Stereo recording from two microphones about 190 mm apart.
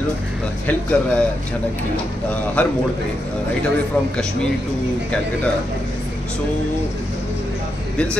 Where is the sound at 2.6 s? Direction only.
5° left (ahead or behind).